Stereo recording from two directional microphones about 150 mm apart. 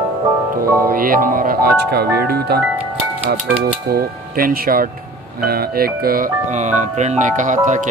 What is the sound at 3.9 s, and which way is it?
Speech, 85° right.